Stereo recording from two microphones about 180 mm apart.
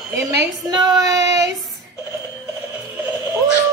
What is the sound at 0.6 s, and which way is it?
Child singing, 20° right (ahead or behind).